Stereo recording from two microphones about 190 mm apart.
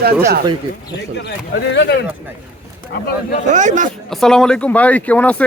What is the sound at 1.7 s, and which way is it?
Speech, 65° left (ahead or behind).